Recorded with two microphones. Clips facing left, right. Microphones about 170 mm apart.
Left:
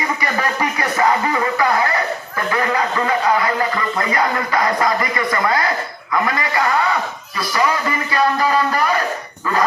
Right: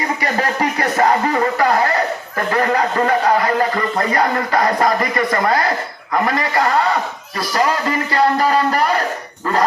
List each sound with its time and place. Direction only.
0.6 s speech: 35° right (ahead or behind)